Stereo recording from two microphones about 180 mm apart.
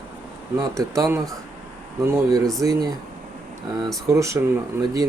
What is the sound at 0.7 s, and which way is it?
Speech, 15° right (ahead or behind).